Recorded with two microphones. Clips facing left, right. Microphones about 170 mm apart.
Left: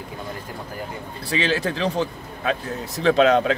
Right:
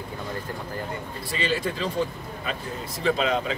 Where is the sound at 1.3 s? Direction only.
85° left.